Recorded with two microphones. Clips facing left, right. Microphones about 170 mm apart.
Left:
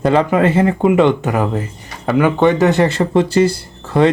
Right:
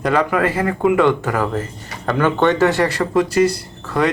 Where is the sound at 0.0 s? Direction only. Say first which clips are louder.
Left 4 dB; 25° left (ahead or behind).